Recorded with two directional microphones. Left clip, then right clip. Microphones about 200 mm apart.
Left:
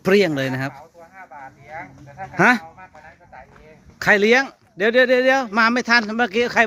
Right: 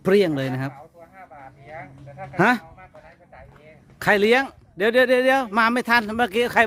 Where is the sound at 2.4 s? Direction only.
15° right (ahead or behind).